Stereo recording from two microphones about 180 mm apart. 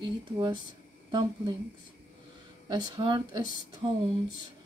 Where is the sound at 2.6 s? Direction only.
25° right (ahead or behind).